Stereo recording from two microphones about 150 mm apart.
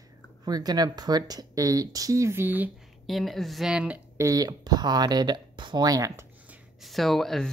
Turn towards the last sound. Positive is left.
turn(degrees=0)  # may be behind; listen again after turning